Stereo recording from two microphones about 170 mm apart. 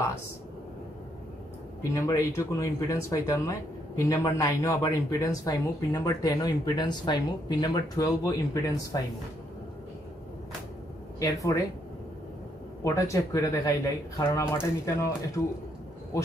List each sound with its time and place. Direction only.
1.8 s speech: 15° left (ahead or behind)
11.1 s speech: 20° left (ahead or behind)
12.8 s speech: 20° left (ahead or behind)